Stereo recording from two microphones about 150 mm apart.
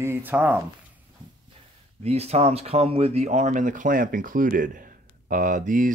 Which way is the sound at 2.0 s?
45° right (ahead or behind).